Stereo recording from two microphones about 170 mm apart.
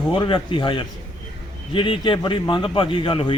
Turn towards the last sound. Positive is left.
turn(degrees=30)  # may be behind; listen again after turning